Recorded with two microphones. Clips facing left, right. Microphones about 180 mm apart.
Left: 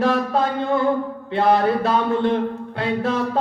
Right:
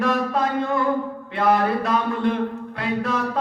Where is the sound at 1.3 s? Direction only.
30° left (ahead or behind).